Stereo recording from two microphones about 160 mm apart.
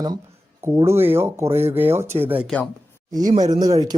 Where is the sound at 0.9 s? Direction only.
15° right (ahead or behind).